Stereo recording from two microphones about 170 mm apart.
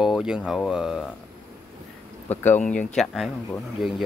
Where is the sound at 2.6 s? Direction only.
5° left (ahead or behind).